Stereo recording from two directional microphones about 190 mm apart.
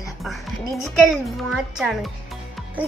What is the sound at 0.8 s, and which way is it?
A child's voice, centre (ahead or behind).